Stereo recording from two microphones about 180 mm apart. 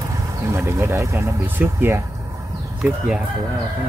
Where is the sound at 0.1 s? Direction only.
15° right (ahead or behind).